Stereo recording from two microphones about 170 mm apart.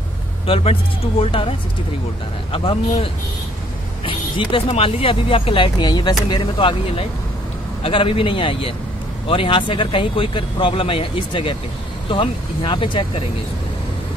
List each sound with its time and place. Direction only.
1.2 s speech: 30° left (ahead or behind)
2.5 s speech: 35° left (ahead or behind)